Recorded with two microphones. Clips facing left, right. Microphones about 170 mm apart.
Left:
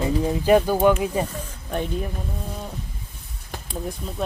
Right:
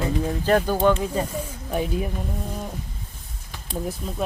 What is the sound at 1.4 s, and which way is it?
Speech, 5° right (ahead or behind).